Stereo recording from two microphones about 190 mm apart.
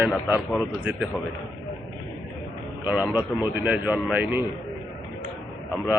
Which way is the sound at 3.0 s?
10° right (ahead or behind).